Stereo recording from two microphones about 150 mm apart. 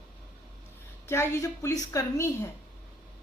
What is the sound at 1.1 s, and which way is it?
A woman's voice, 20° left (ahead or behind).